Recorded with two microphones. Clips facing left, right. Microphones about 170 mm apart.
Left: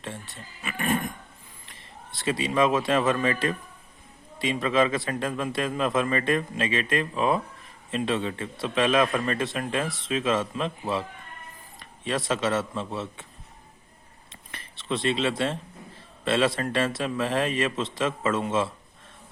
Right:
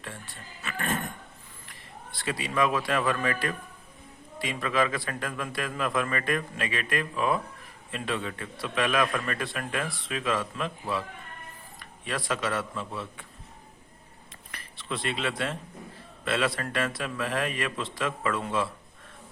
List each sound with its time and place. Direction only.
0.0 s speech: 20° left (ahead or behind)
1.6 s a man's voice: 20° left (ahead or behind)
14.5 s a man's voice: 25° left (ahead or behind)